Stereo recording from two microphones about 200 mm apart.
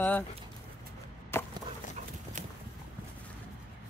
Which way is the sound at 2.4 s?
35° right (ahead or behind).